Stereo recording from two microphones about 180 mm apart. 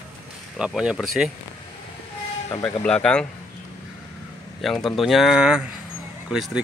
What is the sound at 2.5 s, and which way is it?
Speech, 10° left (ahead or behind).